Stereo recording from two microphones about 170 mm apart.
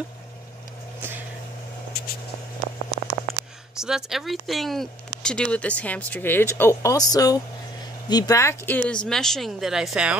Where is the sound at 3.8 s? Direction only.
Centre (ahead or behind).